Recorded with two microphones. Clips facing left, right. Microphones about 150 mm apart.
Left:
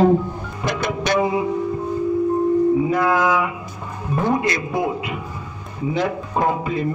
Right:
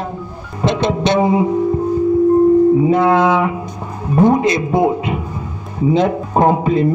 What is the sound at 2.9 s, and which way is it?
A man's voice, 25° right (ahead or behind).